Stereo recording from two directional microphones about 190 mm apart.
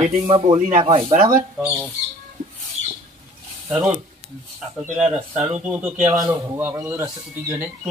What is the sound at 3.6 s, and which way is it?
Speech, 5° right (ahead or behind).